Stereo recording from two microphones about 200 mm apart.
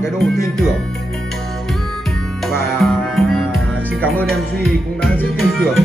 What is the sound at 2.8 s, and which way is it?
Music, centre (ahead or behind).